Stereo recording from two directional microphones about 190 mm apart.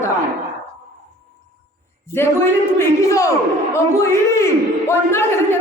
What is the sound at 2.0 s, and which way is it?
A man's voice, 15° left (ahead or behind).